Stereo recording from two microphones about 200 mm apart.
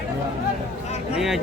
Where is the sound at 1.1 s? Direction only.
Centre (ahead or behind).